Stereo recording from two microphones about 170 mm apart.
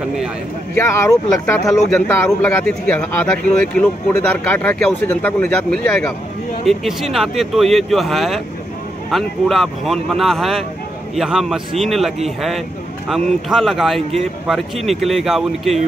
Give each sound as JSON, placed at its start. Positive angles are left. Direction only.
{"t": 0.7, "sound": "speech", "side_deg": 15}
{"t": 1.9, "sound": "speech", "side_deg": 5}